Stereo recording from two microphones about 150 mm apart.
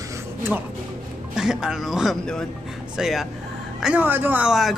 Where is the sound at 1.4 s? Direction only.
5° right (ahead or behind).